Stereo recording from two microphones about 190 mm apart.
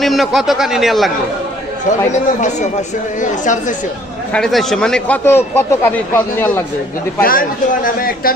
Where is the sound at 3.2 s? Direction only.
40° left (ahead or behind).